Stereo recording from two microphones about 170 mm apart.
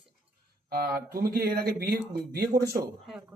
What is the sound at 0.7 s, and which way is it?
Speech, 60° right (ahead or behind).